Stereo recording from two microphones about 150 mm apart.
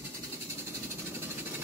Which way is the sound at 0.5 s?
15° right (ahead or behind).